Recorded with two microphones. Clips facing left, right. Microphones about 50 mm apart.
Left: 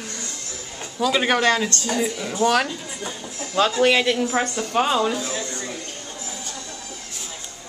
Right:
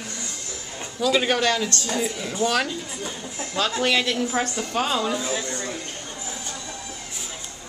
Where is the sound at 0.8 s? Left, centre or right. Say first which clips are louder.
Left 1 dB; centre.